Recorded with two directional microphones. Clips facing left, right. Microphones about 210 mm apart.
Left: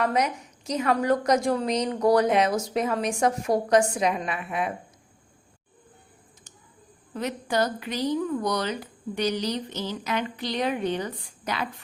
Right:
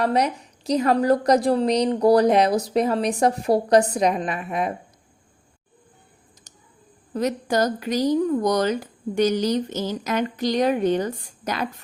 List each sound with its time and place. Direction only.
0.0 s a woman's voice: 35° right (ahead or behind)
7.1 s speech: 40° right (ahead or behind)